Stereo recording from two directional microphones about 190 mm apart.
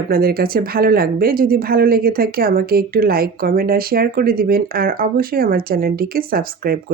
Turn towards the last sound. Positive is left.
turn(degrees=-50)  # may be behind; listen again after turning